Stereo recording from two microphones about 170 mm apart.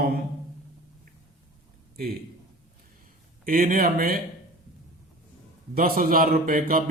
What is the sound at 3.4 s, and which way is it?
Speech, 55° right (ahead or behind).